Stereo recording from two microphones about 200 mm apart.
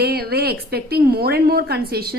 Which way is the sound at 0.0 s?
50° right (ahead or behind).